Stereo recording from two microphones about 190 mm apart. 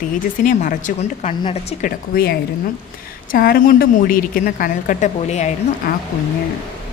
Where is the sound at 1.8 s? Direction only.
55° left (ahead or behind); by 5.9 s 35° left (ahead or behind).